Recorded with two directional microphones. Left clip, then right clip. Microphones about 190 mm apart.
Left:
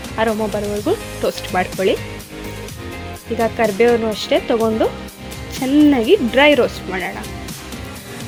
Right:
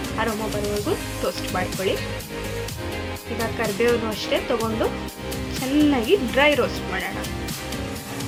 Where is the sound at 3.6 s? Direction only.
45° left (ahead or behind).